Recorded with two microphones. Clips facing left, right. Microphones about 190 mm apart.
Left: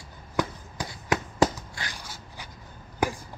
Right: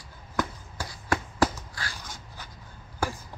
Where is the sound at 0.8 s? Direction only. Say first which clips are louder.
Left 1 dB; 20° left (ahead or behind).